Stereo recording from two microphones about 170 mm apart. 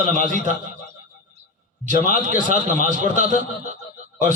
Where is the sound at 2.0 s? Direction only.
45° right (ahead or behind).